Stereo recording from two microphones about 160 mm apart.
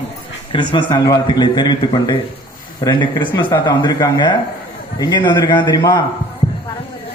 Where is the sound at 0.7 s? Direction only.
30° left (ahead or behind).